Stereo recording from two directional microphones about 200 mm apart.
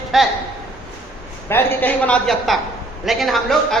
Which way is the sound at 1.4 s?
10° left (ahead or behind).